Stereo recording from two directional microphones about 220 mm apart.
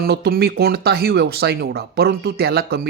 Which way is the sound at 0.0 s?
45° right (ahead or behind).